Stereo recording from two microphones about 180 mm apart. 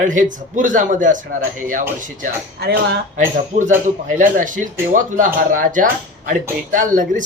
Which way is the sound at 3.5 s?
45° right (ahead or behind).